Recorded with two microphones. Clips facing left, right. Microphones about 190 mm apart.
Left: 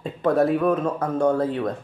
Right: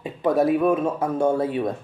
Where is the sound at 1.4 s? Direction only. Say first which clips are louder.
Even; 10° right (ahead or behind).